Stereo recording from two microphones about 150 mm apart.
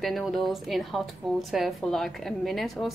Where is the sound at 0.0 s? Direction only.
Centre (ahead or behind).